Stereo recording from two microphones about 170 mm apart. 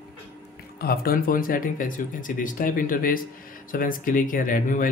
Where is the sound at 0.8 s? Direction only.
60° left (ahead or behind).